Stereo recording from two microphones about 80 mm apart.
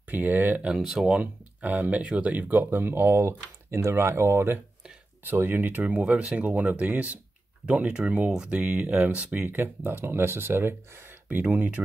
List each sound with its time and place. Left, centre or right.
0.1 s speech: right
0.7 s speech: centre
9.5 s speech: right